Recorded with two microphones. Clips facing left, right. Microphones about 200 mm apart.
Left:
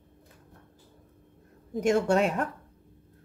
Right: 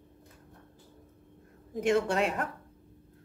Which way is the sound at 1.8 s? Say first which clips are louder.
Left 3 dB; 45° left (ahead or behind).